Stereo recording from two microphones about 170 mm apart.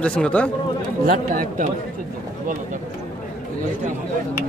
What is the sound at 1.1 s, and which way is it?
Speech, 55° right (ahead or behind).